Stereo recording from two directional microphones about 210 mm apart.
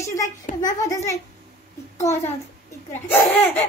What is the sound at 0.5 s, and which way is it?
A child's voice, 15° left (ahead or behind).